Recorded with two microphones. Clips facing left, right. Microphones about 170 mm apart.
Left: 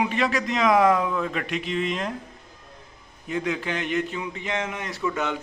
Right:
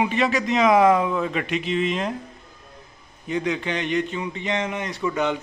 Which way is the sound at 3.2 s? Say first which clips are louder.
Right 2 dB; centre (ahead or behind).